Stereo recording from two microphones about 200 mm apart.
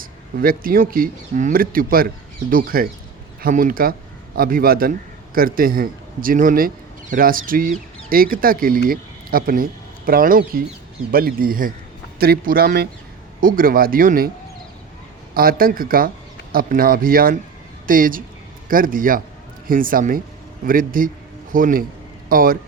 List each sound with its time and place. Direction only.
0.0 s speech: 45° right (ahead or behind)
15.4 s speech: 45° right (ahead or behind)